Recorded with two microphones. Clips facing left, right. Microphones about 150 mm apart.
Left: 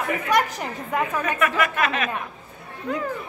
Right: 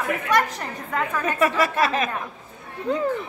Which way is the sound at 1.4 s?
30° right (ahead or behind).